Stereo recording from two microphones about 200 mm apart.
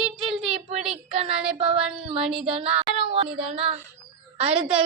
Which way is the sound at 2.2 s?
Centre (ahead or behind).